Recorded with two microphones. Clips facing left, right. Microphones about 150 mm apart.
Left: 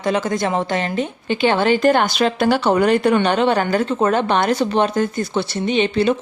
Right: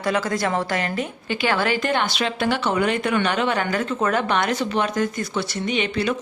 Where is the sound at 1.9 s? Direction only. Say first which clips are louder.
Left 6 dB; 45° left (ahead or behind).